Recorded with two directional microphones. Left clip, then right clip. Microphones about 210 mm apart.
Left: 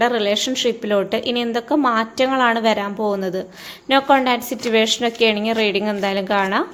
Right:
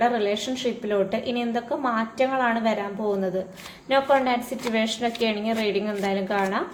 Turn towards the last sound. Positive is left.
turn(degrees=40)  # may be behind; listen again after turning